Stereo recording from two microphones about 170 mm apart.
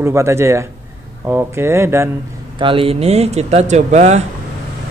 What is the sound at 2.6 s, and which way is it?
Speech, 30° right (ahead or behind).